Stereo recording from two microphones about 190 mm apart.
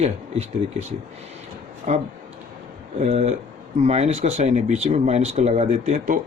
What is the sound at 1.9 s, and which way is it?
Speech, 40° right (ahead or behind).